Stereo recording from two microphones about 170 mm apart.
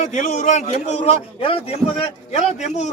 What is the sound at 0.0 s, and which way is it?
A man's voice, 45° left (ahead or behind).